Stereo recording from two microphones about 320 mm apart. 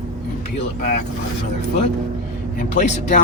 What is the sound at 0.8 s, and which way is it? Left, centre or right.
Speech, left.